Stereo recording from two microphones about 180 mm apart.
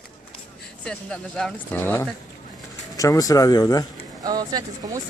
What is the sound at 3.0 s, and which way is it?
Speech, 20° left (ahead or behind).